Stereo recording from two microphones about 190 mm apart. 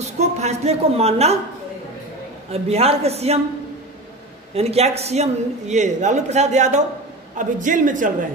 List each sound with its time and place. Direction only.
0.0 s a woman's voice: 35° right (ahead or behind)
2.5 s a man's voice: 30° right (ahead or behind)
4.6 s a man's voice: 35° right (ahead or behind)